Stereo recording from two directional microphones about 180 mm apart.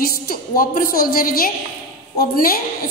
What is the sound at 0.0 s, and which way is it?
A woman's voice, 55° left (ahead or behind).